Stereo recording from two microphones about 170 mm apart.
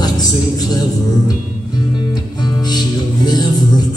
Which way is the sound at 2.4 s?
25° left (ahead or behind).